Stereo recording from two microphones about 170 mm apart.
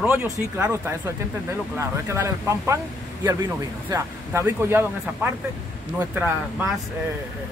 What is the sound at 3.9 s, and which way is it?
Speech, 15° right (ahead or behind).